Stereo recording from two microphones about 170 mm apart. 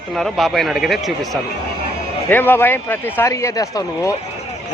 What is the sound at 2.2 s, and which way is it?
Speech, 10° left (ahead or behind).